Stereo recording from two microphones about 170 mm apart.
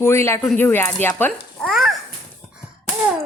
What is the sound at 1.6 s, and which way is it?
Babbling, centre (ahead or behind).